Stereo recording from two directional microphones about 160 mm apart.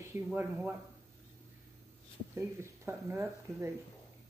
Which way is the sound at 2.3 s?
15° right (ahead or behind).